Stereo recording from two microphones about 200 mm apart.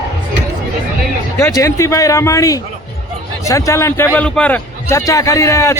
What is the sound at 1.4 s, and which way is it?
A man's voice, 15° left (ahead or behind).